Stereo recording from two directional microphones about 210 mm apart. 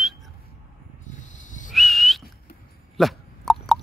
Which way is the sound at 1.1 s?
35° left (ahead or behind).